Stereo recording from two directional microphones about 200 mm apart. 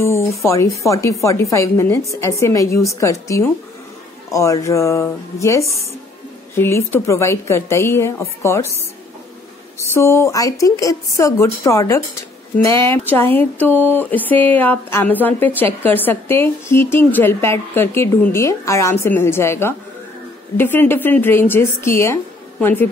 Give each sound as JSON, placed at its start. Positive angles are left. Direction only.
{"t": 0.0, "sound": "a woman's voice", "side_deg": 15}
{"t": 9.8, "sound": "a woman's voice", "side_deg": 15}